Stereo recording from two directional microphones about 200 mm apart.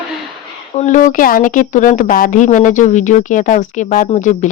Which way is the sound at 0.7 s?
40° left (ahead or behind).